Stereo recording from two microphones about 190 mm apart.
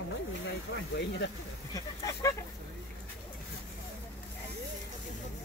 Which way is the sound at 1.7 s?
15° left (ahead or behind).